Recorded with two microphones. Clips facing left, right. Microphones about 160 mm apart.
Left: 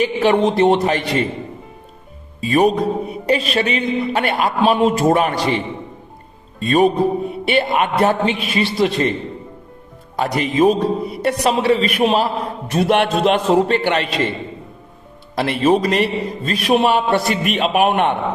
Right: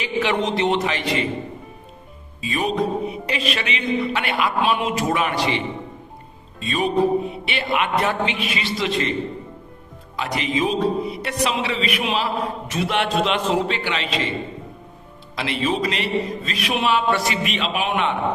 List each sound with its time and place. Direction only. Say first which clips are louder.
0.0 s a man's voice: left 7 dB; 40° left (ahead or behind)
2.4 s a man's voice: left 7 dB; 45° left (ahead or behind)
10.2 s a man's voice: left 7 dB; 45° left (ahead or behind)
15.4 s a man's voice: left 7 dB; 50° left (ahead or behind)
17.2 s a man's voice: left 5 dB; 55° left (ahead or behind)